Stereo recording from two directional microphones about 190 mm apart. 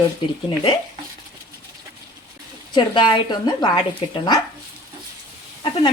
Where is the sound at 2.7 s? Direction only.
25° left (ahead or behind).